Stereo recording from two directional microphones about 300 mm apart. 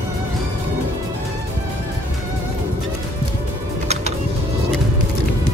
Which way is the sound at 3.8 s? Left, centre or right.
Right.